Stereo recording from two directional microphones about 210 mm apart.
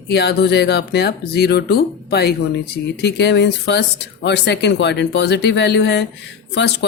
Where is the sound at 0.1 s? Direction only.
50° left (ahead or behind).